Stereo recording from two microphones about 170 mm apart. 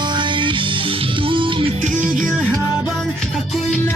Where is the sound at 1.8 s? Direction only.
50° right (ahead or behind).